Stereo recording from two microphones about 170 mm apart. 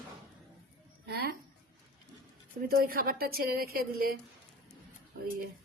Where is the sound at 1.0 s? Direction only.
70° right (ahead or behind).